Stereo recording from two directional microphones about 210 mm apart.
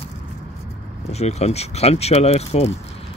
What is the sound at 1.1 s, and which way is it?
Speech, 30° left (ahead or behind).